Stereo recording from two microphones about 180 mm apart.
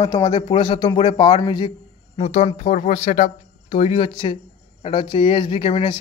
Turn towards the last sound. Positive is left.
turn(degrees=30)  # may be behind; listen again after turning